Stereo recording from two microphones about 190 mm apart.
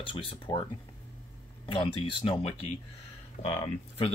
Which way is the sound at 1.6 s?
30° left (ahead or behind).